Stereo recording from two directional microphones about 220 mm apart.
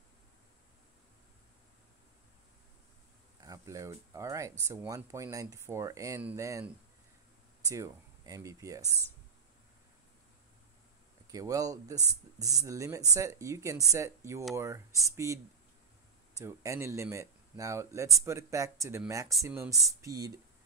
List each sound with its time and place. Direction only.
3.4 s speech: 15° right (ahead or behind)
11.2 s speech: 15° right (ahead or behind)